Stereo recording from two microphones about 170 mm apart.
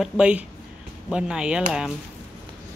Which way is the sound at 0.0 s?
5° right (ahead or behind).